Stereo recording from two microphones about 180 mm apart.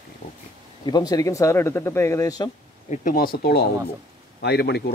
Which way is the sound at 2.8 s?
50° left (ahead or behind).